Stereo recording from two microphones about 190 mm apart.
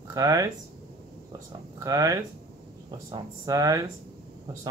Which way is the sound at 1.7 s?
20° right (ahead or behind).